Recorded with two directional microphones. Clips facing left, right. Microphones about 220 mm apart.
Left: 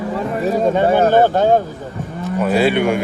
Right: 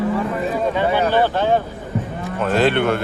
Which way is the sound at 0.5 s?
45° left (ahead or behind).